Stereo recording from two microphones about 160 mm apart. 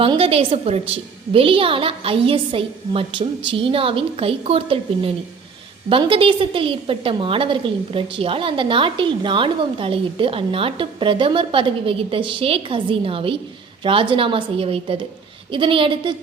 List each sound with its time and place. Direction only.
0.0 s a woman's voice: 35° right (ahead or behind)